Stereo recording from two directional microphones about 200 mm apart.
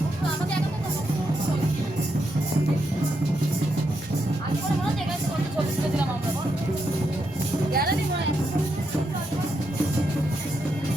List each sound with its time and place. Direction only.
7.7 s music: 50° right (ahead or behind)